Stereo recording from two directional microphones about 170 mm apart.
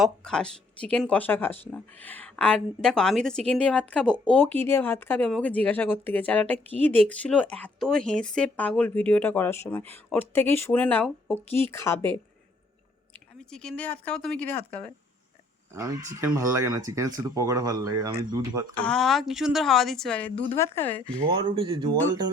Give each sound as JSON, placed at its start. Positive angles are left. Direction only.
{"t": 0.0, "sound": "a woman's voice", "side_deg": 5}
{"t": 13.4, "sound": "a woman's voice", "side_deg": 5}
{"t": 15.7, "sound": "speech", "side_deg": -20}
{"t": 18.8, "sound": "a woman's voice", "side_deg": 5}
{"t": 21.2, "sound": "speech", "side_deg": -30}